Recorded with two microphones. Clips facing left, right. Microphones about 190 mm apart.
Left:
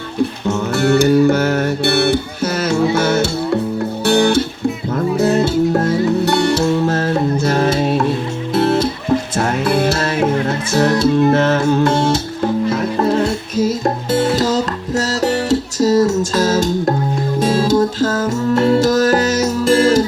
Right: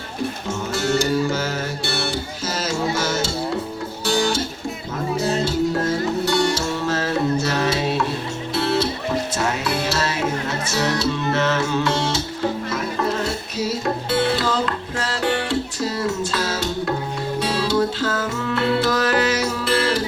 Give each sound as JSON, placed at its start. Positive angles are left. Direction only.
{"t": 0.4, "sound": "music", "side_deg": 60}
{"t": 13.6, "sound": "music", "side_deg": 45}